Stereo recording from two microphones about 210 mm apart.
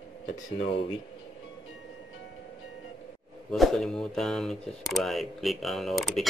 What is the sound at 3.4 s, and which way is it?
Speech, centre (ahead or behind).